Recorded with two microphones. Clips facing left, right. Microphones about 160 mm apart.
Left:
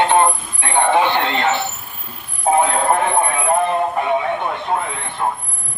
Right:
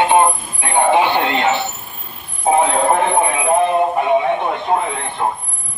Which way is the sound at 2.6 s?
Centre (ahead or behind).